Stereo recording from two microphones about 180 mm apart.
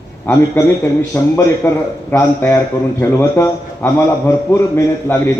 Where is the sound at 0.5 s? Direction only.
10° left (ahead or behind).